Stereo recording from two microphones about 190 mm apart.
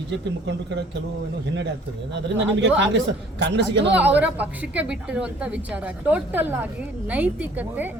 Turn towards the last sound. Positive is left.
turn(degrees=-10)  # may be behind; listen again after turning